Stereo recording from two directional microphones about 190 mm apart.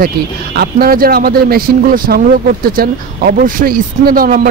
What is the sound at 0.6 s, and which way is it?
Speech, 50° right (ahead or behind).